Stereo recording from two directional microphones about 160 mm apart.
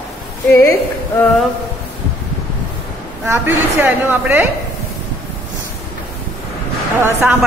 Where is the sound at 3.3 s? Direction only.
10° right (ahead or behind).